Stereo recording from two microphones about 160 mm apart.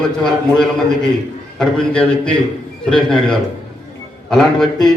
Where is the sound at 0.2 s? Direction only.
30° left (ahead or behind).